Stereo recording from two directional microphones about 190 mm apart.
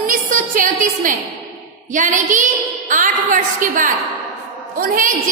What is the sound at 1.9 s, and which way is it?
A woman's voice, 40° right (ahead or behind).